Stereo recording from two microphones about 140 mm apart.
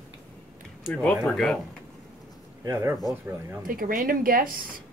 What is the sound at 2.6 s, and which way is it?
Speech, 20° right (ahead or behind).